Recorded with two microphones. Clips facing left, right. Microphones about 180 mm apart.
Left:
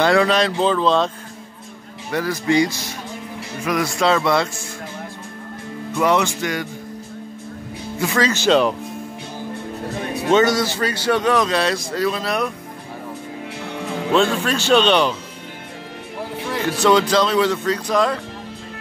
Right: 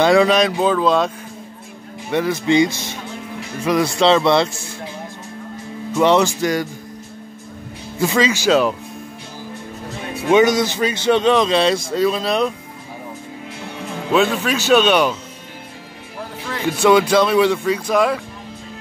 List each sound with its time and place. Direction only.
0.0 s speech: 15° right (ahead or behind)
2.1 s speech: 20° right (ahead or behind)
5.9 s speech: 30° right (ahead or behind)
8.1 s speech: 15° right (ahead or behind)
10.3 s speech: 15° right (ahead or behind)
14.1 s speech: 5° right (ahead or behind)
16.8 s speech: 10° right (ahead or behind)